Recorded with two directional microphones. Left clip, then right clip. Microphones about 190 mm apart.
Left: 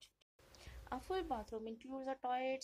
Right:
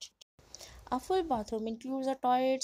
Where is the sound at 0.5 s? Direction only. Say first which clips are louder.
Right 11 dB; 45° right (ahead or behind).